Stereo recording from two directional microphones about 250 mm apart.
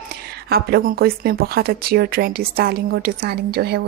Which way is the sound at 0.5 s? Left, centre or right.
Right.